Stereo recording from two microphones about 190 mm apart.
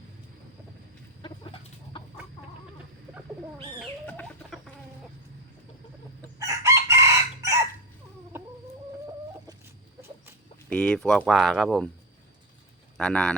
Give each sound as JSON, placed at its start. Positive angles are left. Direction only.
{"t": 1.2, "sound": "chicken", "side_deg": 25}
{"t": 3.8, "sound": "chicken", "side_deg": 5}
{"t": 6.4, "sound": "chicken", "side_deg": -15}
{"t": 10.7, "sound": "speech", "side_deg": 5}
{"t": 13.0, "sound": "speech", "side_deg": 5}